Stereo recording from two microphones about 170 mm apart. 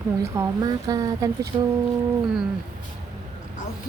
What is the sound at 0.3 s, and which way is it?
Speech, 20° right (ahead or behind).